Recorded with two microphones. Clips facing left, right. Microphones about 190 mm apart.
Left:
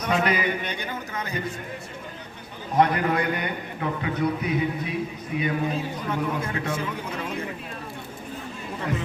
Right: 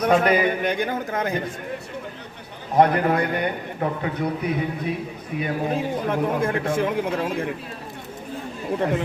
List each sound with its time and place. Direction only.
0.0 s a man's voice: 50° right (ahead or behind)
2.7 s a man's voice: 45° right (ahead or behind)